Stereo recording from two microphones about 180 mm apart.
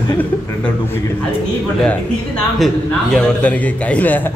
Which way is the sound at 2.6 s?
Centre (ahead or behind).